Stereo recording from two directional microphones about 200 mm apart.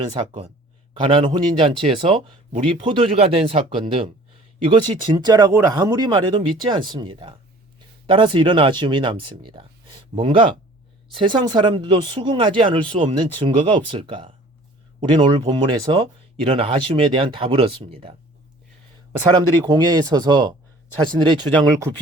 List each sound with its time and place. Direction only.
0.1 s speech: 25° right (ahead or behind)
19.3 s speech: 20° right (ahead or behind)